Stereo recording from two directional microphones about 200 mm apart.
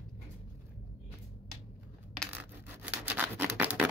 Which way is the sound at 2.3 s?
10° right (ahead or behind).